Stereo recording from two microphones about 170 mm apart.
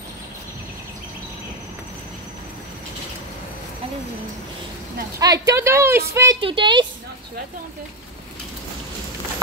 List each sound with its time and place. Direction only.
5.2 s speech: 20° right (ahead or behind)
6.4 s speech: 30° right (ahead or behind)